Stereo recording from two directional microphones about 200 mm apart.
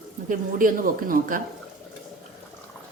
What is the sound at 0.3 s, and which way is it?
Speech, 45° right (ahead or behind).